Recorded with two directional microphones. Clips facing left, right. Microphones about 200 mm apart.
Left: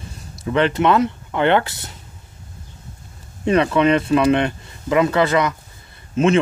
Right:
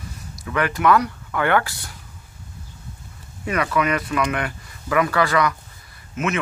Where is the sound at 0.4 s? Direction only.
25° left (ahead or behind).